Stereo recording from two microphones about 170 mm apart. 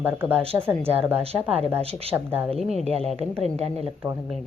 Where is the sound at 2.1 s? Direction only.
10° right (ahead or behind).